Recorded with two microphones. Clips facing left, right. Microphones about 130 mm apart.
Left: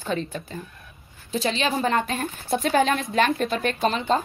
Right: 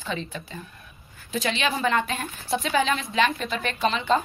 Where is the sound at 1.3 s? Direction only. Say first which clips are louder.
Left 2 dB; 35° left (ahead or behind).